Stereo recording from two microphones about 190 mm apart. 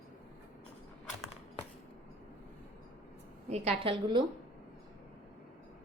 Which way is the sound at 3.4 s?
35° right (ahead or behind).